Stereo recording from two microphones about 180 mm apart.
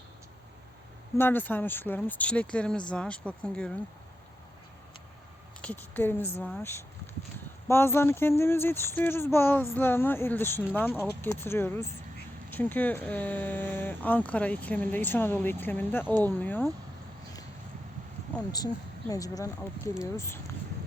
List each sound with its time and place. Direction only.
1.2 s speech: 10° left (ahead or behind)
5.6 s speech: 10° left (ahead or behind)
18.5 s speech: 20° left (ahead or behind)